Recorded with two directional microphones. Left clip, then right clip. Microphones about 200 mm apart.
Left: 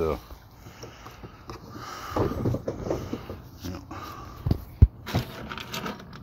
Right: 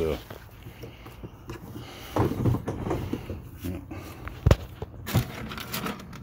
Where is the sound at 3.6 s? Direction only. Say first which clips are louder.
Left 1 dB; 15° right (ahead or behind).